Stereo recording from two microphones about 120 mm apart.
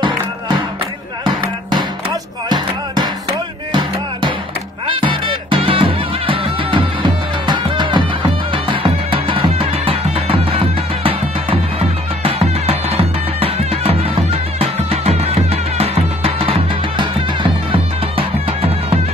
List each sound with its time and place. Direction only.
1.7 s music: 40° right (ahead or behind)
4.8 s music: 45° right (ahead or behind)
12.2 s music: 55° right (ahead or behind)